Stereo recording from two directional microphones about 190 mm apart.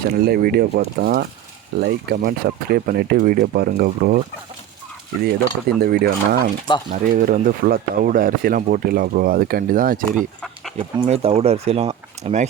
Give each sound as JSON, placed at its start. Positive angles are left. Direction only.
{"t": 0.0, "sound": "speech", "side_deg": -55}
{"t": 5.2, "sound": "speech", "side_deg": -55}
{"t": 10.2, "sound": "speech", "side_deg": 0}
{"t": 10.9, "sound": "speech", "side_deg": -30}